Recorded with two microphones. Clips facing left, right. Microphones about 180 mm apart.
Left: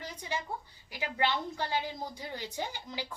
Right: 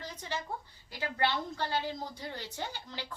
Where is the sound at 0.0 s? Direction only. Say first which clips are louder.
Left 1 dB; 10° left (ahead or behind).